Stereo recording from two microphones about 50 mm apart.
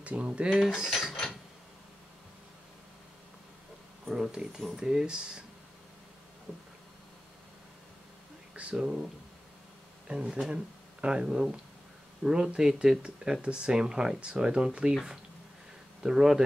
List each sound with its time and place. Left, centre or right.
0.0 s speech: right
0.5 s cutlery: centre
4.0 s speech: centre
8.7 s speech: centre
16.0 s speech: centre